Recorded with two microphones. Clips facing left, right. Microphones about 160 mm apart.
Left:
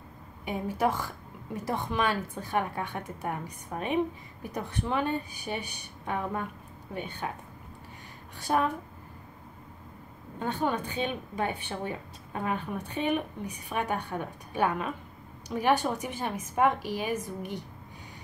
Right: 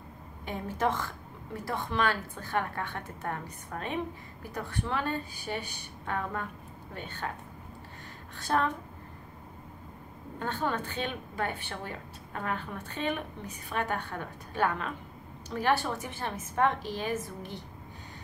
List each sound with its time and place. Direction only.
0.5 s a woman's voice: 15° left (ahead or behind)
8.4 s a woman's voice: 10° left (ahead or behind)
10.4 s a woman's voice: 15° left (ahead or behind)